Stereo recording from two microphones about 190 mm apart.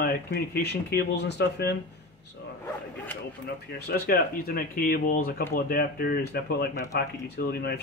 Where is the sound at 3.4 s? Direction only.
55° left (ahead or behind).